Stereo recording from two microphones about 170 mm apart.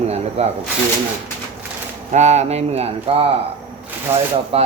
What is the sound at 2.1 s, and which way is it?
Speech, 40° right (ahead or behind).